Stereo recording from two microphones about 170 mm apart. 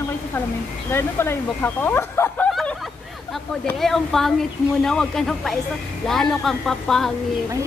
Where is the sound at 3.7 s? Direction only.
Centre (ahead or behind).